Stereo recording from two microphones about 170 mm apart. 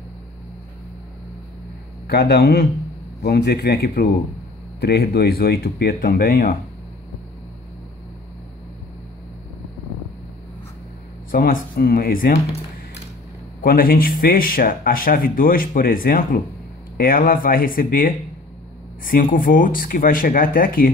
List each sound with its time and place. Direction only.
2.0 s a man's voice: 75° left (ahead or behind); by 6.6 s 50° left (ahead or behind)
11.3 s speech: 55° left (ahead or behind)
13.6 s speech: 60° left (ahead or behind)